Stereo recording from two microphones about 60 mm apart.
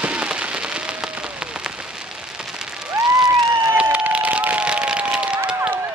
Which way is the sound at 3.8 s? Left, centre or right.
Right.